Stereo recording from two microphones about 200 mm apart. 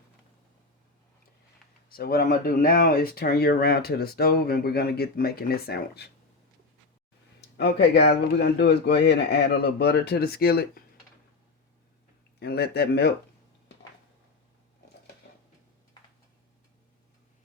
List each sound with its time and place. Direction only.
1.9 s speech: 50° left (ahead or behind)
7.5 s speech: 60° left (ahead or behind)
12.4 s speech: 50° left (ahead or behind)